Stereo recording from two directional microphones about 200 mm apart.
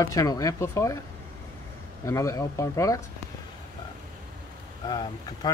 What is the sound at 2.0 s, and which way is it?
Speech, 15° left (ahead or behind).